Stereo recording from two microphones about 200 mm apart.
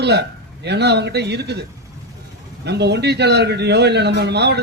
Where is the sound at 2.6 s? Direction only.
55° right (ahead or behind).